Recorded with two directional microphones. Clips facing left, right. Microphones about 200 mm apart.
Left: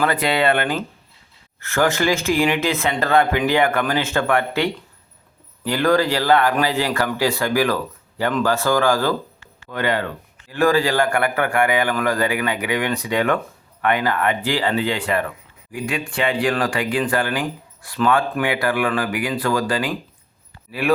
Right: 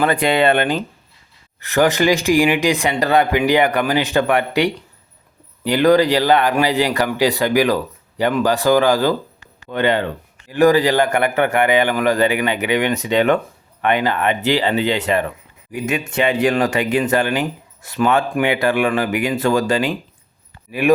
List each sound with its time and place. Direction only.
0.0 s speech: 20° right (ahead or behind)